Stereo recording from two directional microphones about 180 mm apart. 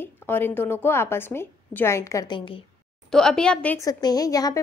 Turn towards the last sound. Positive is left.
turn(degrees=20)  # may be behind; listen again after turning